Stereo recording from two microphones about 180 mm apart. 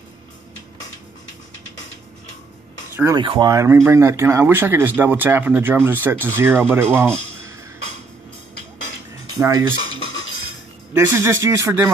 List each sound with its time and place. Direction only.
2.9 s a sound: 15° right (ahead or behind)
3.2 s speech: 25° right (ahead or behind)
9.4 s speech: 20° right (ahead or behind)
11.0 s speech: 15° right (ahead or behind)